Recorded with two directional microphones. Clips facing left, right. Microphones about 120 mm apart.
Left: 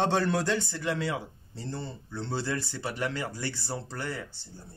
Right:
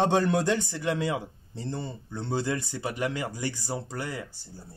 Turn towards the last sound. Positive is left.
turn(degrees=-10)  # may be behind; listen again after turning